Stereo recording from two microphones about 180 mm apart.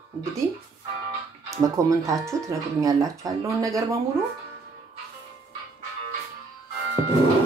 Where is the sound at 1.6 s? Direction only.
20° right (ahead or behind).